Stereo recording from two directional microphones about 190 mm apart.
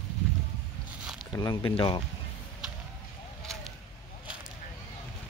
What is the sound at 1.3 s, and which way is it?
Speech, 20° left (ahead or behind).